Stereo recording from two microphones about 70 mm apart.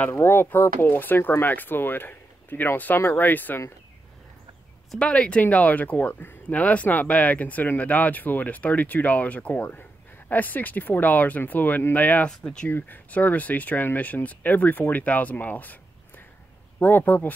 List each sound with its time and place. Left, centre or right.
0.1 s speech: left
4.9 s speech: centre
12.3 s speech: centre
12.6 s speech: left
16.8 s speech: left